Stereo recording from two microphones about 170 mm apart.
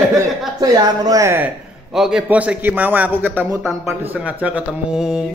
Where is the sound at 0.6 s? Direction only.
20° right (ahead or behind).